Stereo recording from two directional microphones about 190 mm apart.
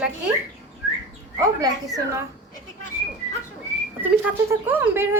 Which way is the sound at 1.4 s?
20° right (ahead or behind).